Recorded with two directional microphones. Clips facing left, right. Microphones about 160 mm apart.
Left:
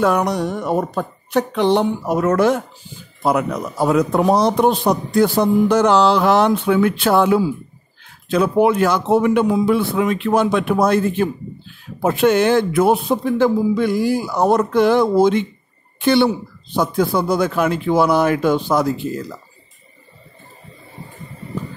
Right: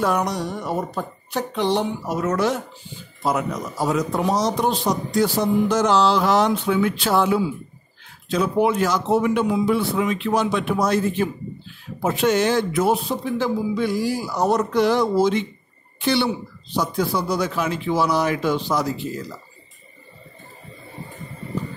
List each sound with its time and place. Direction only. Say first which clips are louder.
0.0 s a man's voice: left 5 dB; 65° left (ahead or behind)